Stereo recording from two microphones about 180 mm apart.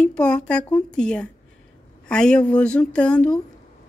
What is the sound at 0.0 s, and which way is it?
Speech, 5° left (ahead or behind).